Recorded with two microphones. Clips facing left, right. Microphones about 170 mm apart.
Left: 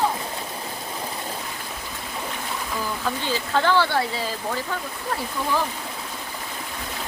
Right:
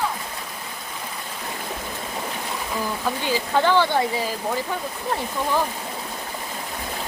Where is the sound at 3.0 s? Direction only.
15° right (ahead or behind).